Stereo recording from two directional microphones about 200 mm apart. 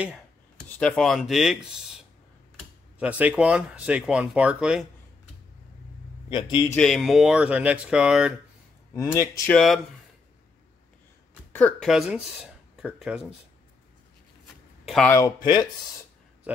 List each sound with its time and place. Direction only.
0.6 s speech: 5° left (ahead or behind)
3.0 s speech: 5° right (ahead or behind)
6.2 s a man's voice: 25° left (ahead or behind)
6.7 s speech: centre (ahead or behind)
8.9 s speech: 15° left (ahead or behind)
9.5 s speech: 5° left (ahead or behind)
11.5 s speech: 5° left (ahead or behind)
14.9 s speech: 5° left (ahead or behind)
15.1 s speech: 20° left (ahead or behind)